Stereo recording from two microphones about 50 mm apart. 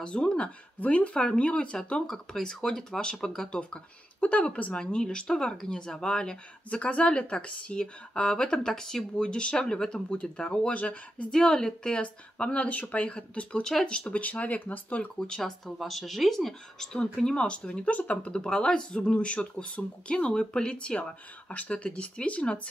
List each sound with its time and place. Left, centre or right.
0.0 s speech: centre
0.7 s speech: left
1.2 s speech: centre
3.7 s speech: left
4.7 s speech: centre
10.7 s speech: left
11.3 s speech: centre; by 15.0 s left
15.1 s speech: centre